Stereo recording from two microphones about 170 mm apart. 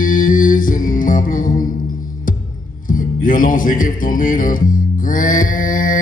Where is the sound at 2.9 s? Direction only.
50° left (ahead or behind).